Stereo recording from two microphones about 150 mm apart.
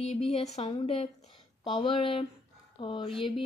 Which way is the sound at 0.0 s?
50° left (ahead or behind).